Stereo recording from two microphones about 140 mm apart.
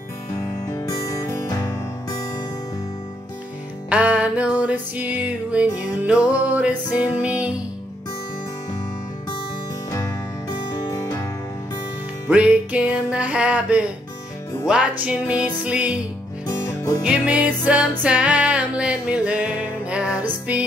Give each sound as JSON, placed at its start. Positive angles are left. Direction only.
{"t": 0.7, "sound": "music", "side_deg": 20}
{"t": 3.9, "sound": "music", "side_deg": -10}
{"t": 10.7, "sound": "music", "side_deg": 20}
{"t": 12.3, "sound": "music", "side_deg": -10}
{"t": 16.4, "sound": "music", "side_deg": 20}
{"t": 17.0, "sound": "music", "side_deg": -10}